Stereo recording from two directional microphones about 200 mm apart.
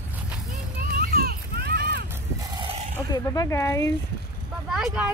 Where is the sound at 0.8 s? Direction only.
50° right (ahead or behind).